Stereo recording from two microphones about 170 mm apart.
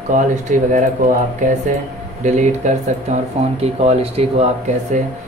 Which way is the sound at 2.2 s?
45° right (ahead or behind).